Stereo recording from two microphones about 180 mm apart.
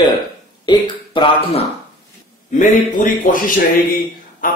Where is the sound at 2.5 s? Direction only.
45° left (ahead or behind).